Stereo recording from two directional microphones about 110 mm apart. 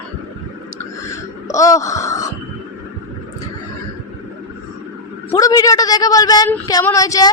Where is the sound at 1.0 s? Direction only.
30° left (ahead or behind).